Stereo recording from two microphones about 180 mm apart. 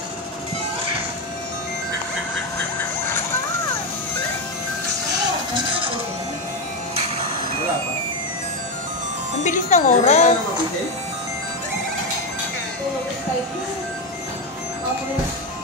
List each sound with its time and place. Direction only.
9.4 s speech: 40° left (ahead or behind)